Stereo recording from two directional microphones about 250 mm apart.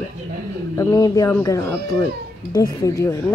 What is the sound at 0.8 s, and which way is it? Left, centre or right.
Speech, centre.